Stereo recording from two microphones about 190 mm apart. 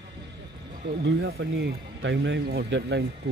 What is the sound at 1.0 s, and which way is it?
Speech, 65° right (ahead or behind).